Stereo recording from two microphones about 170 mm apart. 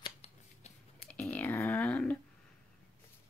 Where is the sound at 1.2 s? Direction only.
10° left (ahead or behind).